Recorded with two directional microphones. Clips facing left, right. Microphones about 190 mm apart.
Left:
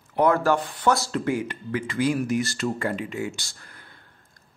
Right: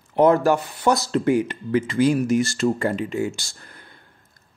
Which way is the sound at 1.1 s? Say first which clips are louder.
Right 6 dB; 20° right (ahead or behind).